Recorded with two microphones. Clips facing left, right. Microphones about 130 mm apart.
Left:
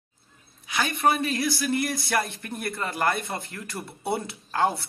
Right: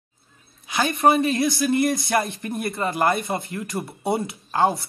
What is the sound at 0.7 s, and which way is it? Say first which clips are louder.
Speech: right 5 dB; 25° right (ahead or behind).